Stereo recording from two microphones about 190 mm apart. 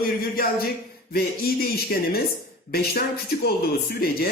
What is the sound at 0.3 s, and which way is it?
Speech, 55° left (ahead or behind).